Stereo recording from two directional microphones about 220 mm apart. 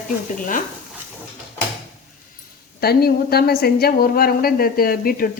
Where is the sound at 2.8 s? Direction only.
45° left (ahead or behind).